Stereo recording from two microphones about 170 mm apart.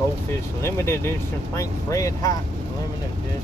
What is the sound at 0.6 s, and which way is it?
Speech, 15° left (ahead or behind).